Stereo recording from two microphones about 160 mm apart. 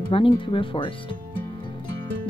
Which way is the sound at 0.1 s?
35° left (ahead or behind).